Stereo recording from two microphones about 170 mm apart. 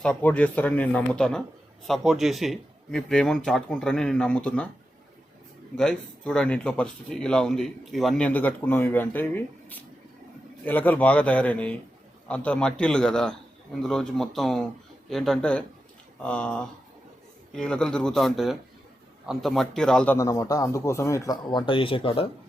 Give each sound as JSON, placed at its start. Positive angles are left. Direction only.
{"t": 0.0, "sound": "a man's voice", "side_deg": 10}
{"t": 5.7, "sound": "a man's voice", "side_deg": 5}
{"t": 20.1, "sound": "speech", "side_deg": 20}